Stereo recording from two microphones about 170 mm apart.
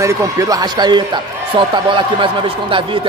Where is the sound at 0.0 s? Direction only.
20° right (ahead or behind).